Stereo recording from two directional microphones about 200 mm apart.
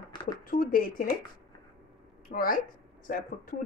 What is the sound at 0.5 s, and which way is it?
Speech, 45° left (ahead or behind).